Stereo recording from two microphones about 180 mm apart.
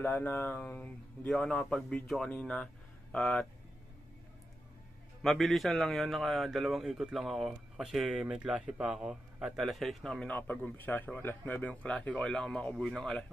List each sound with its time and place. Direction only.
0.0 s speech: 10° left (ahead or behind)
5.2 s speech: centre (ahead or behind)